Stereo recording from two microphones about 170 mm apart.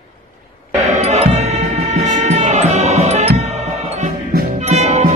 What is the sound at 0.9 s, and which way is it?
Music, 40° right (ahead or behind).